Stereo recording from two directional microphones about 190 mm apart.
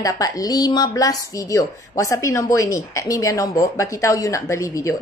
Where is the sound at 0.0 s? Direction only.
20° left (ahead or behind).